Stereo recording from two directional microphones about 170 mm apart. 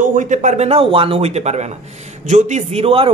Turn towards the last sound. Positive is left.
turn(degrees=-35)  # may be behind; listen again after turning